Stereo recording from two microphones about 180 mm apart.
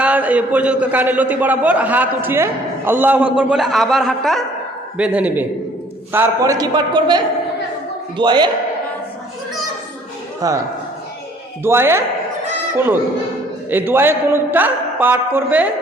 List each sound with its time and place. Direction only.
0.0 s a man's voice: 10° right (ahead or behind)
8.2 s a man's voice: 25° right (ahead or behind)
10.4 s a man's voice: 20° right (ahead or behind)
11.6 s a man's voice: 15° right (ahead or behind)